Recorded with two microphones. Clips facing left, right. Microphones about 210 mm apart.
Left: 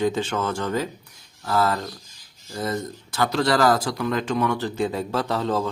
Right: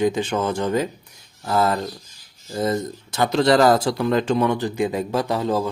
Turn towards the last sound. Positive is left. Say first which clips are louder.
# right 2 dB
turn(degrees=-10)  # may be behind; listen again after turning